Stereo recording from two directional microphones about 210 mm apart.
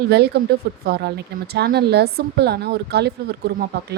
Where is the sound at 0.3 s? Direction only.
50° right (ahead or behind).